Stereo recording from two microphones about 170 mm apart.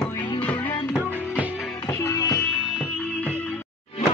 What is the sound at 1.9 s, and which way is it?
Music, 20° left (ahead or behind).